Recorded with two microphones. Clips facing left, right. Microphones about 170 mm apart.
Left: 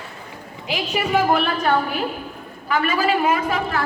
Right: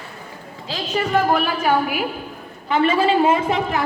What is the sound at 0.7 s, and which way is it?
Speech, 10° left (ahead or behind).